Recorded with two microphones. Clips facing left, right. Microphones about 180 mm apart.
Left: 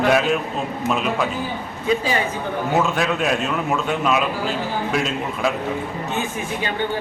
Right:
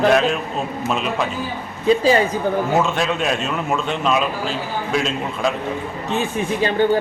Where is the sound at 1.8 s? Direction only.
35° right (ahead or behind).